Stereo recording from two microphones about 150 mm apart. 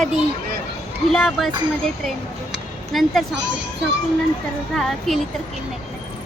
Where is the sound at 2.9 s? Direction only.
Centre (ahead or behind).